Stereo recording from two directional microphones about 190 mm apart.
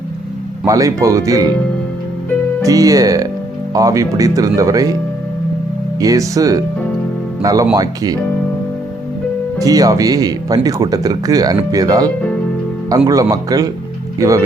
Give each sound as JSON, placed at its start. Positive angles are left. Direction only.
{"t": 0.6, "sound": "speech", "side_deg": -15}
{"t": 2.6, "sound": "speech", "side_deg": -20}
{"t": 6.0, "sound": "speech", "side_deg": -20}
{"t": 9.6, "sound": "speech", "side_deg": -20}